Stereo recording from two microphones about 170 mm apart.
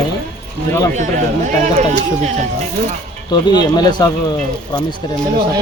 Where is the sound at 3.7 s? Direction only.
25° left (ahead or behind).